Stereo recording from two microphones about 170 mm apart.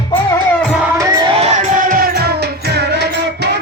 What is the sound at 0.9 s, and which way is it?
Music, 20° right (ahead or behind).